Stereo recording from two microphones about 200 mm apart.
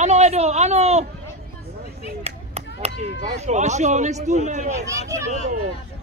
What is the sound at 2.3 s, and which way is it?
Speech, 30° right (ahead or behind).